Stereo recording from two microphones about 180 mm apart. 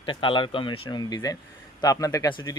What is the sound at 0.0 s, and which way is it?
Speech, 30° left (ahead or behind).